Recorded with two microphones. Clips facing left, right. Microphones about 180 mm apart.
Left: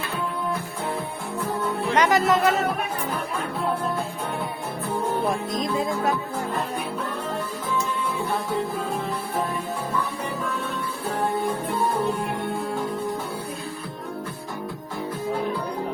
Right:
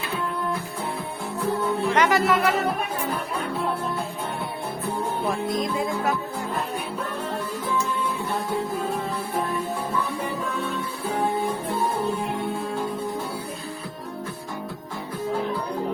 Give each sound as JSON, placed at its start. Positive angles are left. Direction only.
{"t": 2.0, "sound": "music", "side_deg": 20}